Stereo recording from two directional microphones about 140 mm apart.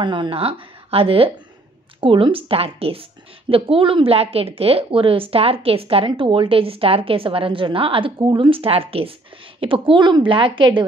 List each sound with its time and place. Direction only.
0.0 s a woman's voice: 35° right (ahead or behind)